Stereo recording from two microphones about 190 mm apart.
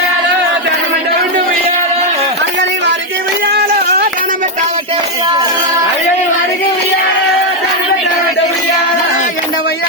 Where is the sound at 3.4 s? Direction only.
55° right (ahead or behind).